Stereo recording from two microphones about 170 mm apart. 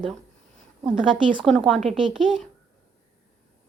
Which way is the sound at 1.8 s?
35° right (ahead or behind).